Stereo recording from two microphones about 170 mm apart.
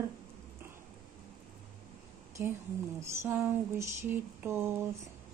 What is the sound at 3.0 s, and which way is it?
Speech, 15° right (ahead or behind).